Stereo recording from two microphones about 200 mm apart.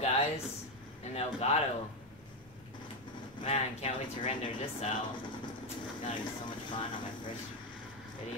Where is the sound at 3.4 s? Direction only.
30° left (ahead or behind).